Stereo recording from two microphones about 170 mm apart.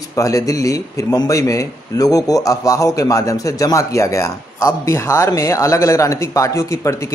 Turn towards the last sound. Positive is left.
turn(degrees=15)  # may be behind; listen again after turning